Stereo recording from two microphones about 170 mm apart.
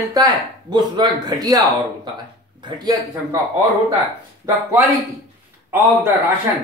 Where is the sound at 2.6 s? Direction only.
25° right (ahead or behind).